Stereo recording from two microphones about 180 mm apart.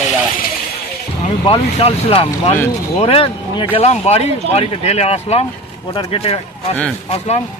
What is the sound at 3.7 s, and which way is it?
Speech, 35° left (ahead or behind).